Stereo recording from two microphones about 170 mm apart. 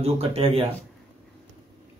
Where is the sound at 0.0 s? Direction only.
35° right (ahead or behind).